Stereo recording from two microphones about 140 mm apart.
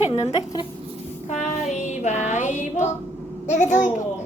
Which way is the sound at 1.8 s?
60° left (ahead or behind).